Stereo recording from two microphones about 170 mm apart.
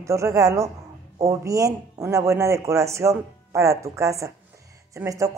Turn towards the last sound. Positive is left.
turn(degrees=-20)  # may be behind; listen again after turning